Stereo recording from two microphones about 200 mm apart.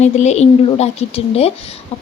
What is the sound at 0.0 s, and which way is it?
A woman's voice, 35° left (ahead or behind).